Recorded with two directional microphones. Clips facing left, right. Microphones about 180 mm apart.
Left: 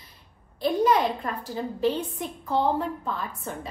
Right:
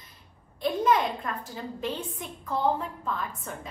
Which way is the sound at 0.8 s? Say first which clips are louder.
Left 2 dB; 35° left (ahead or behind).